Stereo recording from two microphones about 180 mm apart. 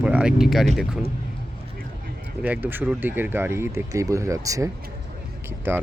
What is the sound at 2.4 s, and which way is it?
Speech, 10° right (ahead or behind).